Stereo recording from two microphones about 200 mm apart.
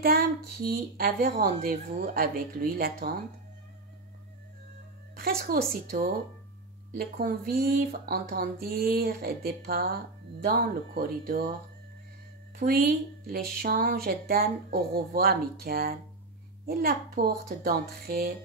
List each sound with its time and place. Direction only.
0.0 s a woman's voice: 50° right (ahead or behind)
5.1 s a woman's voice: 50° right (ahead or behind)
12.5 s a woman's voice: 45° right (ahead or behind)